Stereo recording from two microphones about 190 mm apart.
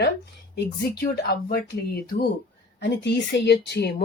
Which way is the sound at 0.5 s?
55° left (ahead or behind).